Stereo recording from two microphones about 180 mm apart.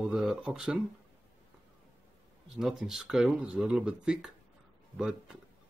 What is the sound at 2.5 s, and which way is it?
Speech, 5° right (ahead or behind).